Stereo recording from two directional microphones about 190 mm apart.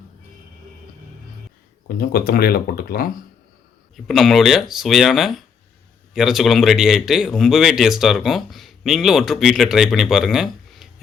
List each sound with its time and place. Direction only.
2.0 s speech: 50° left (ahead or behind)
3.9 s speech: centre (ahead or behind)